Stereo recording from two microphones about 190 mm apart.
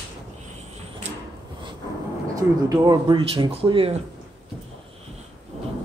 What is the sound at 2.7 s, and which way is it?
Speech, 20° right (ahead or behind).